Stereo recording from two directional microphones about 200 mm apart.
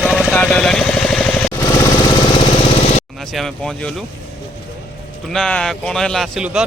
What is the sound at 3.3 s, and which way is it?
Speech, centre (ahead or behind).